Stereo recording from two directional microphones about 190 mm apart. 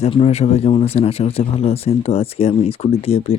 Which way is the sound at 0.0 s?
30° left (ahead or behind).